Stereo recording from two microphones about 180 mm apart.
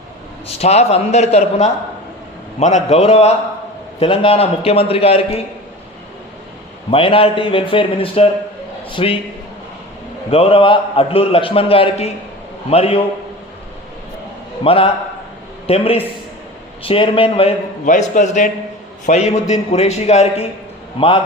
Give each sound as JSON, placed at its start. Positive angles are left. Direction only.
{"t": 0.4, "sound": "a man's voice", "side_deg": 35}
{"t": 6.9, "sound": "a man's voice", "side_deg": 30}
{"t": 10.2, "sound": "a man's voice", "side_deg": 30}
{"t": 14.6, "sound": "a man's voice", "side_deg": 30}
{"t": 18.1, "sound": "a man's voice", "side_deg": 45}